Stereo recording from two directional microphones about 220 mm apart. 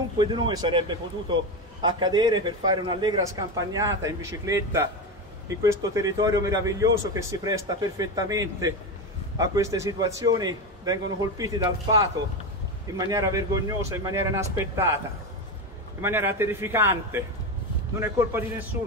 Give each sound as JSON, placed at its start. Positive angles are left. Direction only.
{"t": 0.2, "sound": "a man's voice", "side_deg": -20}
{"t": 16.0, "sound": "a man's voice", "side_deg": -10}